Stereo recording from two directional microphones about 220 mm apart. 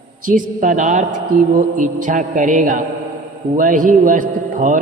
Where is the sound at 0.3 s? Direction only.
35° right (ahead or behind).